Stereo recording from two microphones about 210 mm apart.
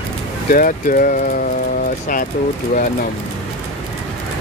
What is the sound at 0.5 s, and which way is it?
Speech, 40° left (ahead or behind).